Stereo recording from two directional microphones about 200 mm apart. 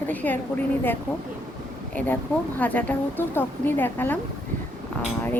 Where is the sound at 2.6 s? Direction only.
5° left (ahead or behind).